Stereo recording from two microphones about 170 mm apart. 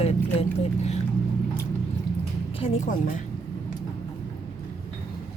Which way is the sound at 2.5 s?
45° left (ahead or behind).